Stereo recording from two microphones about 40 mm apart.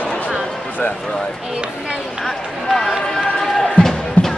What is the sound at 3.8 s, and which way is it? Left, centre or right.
Music, centre.